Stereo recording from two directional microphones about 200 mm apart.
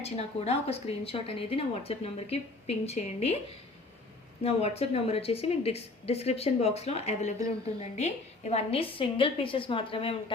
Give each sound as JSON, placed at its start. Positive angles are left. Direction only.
{"t": 0.0, "sound": "speech", "side_deg": 30}
{"t": 4.4, "sound": "a woman's voice", "side_deg": 30}